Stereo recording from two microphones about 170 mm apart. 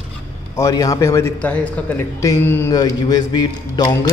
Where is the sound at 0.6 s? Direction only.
20° left (ahead or behind).